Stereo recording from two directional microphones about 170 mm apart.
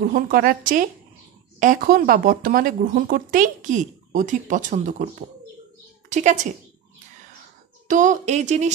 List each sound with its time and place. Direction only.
0.0 s speech: 55° right (ahead or behind)
6.0 s speech: 45° right (ahead or behind)
7.9 s speech: 50° right (ahead or behind)